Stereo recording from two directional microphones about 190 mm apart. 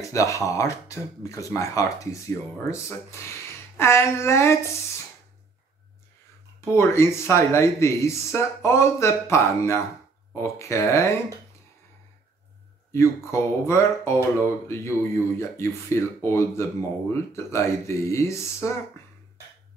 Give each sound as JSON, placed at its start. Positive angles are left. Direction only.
{"t": 0.0, "sound": "speech", "side_deg": 15}
{"t": 6.7, "sound": "speech", "side_deg": 15}
{"t": 12.9, "sound": "speech", "side_deg": 15}